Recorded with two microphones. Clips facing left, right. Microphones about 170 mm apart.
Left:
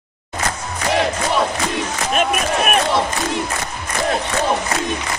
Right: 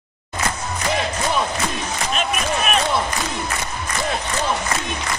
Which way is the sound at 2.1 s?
55° left (ahead or behind).